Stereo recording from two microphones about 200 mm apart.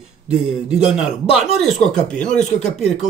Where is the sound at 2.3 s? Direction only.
35° left (ahead or behind).